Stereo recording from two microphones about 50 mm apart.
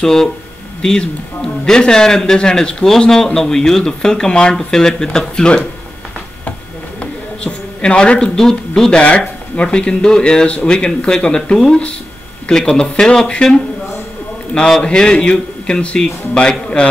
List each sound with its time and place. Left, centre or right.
0.0 s speech: centre
7.0 s speech: left
11.5 s speech: centre